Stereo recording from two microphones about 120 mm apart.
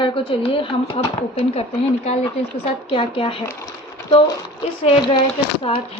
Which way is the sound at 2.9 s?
50° left (ahead or behind).